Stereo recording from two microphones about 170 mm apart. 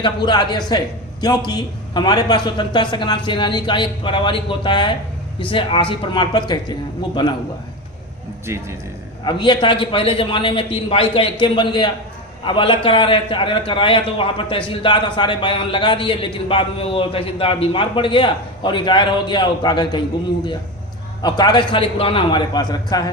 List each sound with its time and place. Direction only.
0.0 s a man's voice: 25° left (ahead or behind)
8.5 s a man's voice: 15° right (ahead or behind)
9.2 s a man's voice: 25° left (ahead or behind)
21.2 s a man's voice: 25° left (ahead or behind)